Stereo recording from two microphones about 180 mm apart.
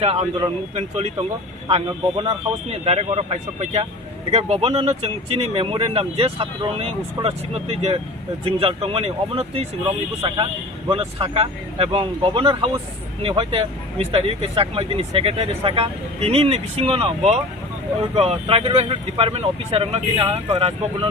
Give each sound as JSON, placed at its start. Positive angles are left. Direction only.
{"t": 0.0, "sound": "speech", "side_deg": -35}